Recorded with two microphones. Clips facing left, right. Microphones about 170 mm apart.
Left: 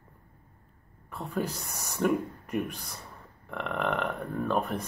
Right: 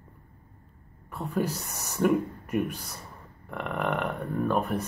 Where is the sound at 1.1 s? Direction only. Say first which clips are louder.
Right 3 dB; 15° right (ahead or behind).